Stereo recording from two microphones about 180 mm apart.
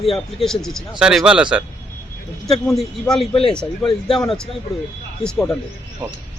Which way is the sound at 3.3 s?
30° left (ahead or behind).